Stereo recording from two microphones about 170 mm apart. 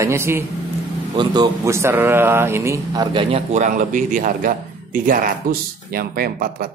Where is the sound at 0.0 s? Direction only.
15° right (ahead or behind).